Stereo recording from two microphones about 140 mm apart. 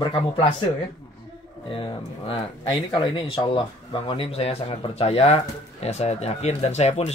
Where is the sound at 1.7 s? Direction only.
40° left (ahead or behind).